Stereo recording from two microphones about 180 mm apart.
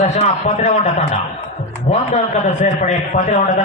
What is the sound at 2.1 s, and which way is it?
A man's voice, 40° left (ahead or behind).